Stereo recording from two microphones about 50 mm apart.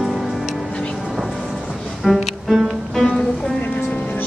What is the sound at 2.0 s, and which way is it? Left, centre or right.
Music, centre.